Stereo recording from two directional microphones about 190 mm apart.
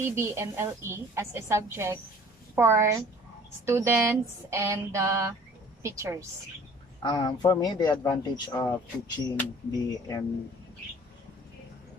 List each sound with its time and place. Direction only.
0.0 s a woman's voice: 15° right (ahead or behind)
7.0 s a man's voice: 20° left (ahead or behind)